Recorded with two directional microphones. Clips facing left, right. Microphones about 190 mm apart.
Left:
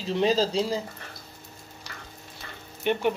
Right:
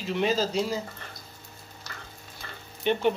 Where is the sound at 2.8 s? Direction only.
10° left (ahead or behind).